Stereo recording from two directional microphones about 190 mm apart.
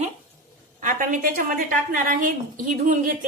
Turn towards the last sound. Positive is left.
turn(degrees=-45)  # may be behind; listen again after turning